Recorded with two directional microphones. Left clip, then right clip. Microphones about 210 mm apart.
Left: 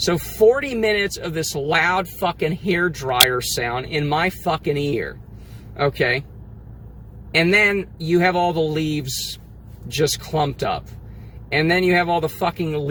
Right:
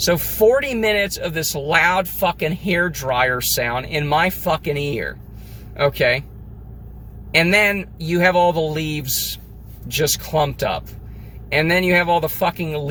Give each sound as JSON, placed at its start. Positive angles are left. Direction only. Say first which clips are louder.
{"t": 0.0, "sound": "speech", "louder": "even", "side_deg": -10}
{"t": 7.3, "sound": "speech", "louder": "right 1 dB", "side_deg": -10}